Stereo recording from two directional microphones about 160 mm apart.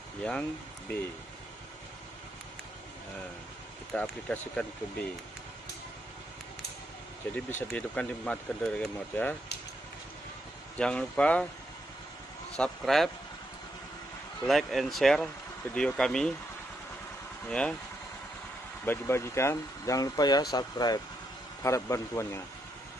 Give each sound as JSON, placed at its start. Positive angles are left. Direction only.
{"t": 0.2, "sound": "speech", "side_deg": 10}
{"t": 3.9, "sound": "speech", "side_deg": 10}
{"t": 7.3, "sound": "speech", "side_deg": 10}
{"t": 10.8, "sound": "speech", "side_deg": 5}
{"t": 12.5, "sound": "speech", "side_deg": 5}
{"t": 14.5, "sound": "speech", "side_deg": 0}
{"t": 17.5, "sound": "speech", "side_deg": 5}
{"t": 18.9, "sound": "a man's voice", "side_deg": 15}